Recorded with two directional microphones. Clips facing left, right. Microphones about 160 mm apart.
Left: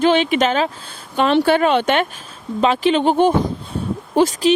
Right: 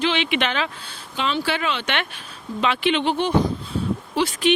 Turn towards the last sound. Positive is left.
turn(degrees=45)  # may be behind; listen again after turning